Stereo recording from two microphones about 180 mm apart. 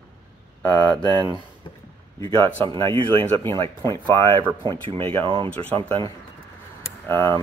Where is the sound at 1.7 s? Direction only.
25° left (ahead or behind).